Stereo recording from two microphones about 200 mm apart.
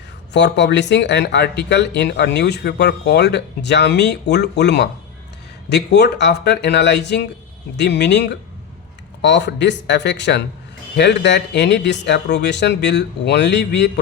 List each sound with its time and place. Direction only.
0.3 s speech: 60° left (ahead or behind)